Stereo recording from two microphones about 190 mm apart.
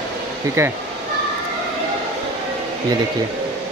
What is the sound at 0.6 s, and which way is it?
Speech, 15° right (ahead or behind).